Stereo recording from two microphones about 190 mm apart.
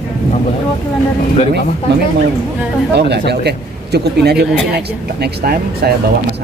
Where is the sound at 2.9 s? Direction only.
60° right (ahead or behind).